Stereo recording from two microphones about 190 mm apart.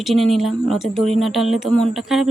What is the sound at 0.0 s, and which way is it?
Speech, centre (ahead or behind).